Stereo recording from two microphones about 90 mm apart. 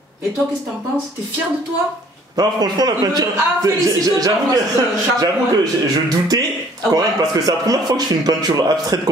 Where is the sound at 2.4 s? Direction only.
45° right (ahead or behind).